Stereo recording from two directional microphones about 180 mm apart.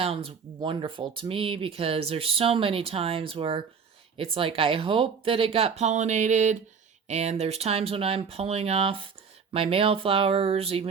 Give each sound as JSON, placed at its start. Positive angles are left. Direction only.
{"t": 0.0, "sound": "speech", "side_deg": -35}